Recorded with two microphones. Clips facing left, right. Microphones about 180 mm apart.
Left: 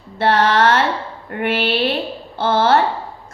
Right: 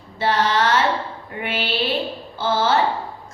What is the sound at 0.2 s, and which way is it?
Music, 65° left (ahead or behind).